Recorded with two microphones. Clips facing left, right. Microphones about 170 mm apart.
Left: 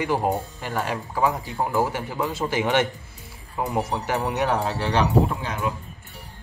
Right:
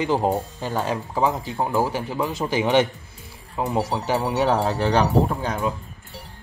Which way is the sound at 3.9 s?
20° right (ahead or behind).